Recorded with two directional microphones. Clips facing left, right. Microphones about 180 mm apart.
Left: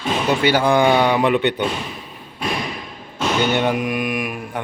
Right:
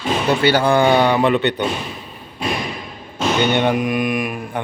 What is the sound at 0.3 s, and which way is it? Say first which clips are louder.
Speech: right 1 dB; 10° left (ahead or behind).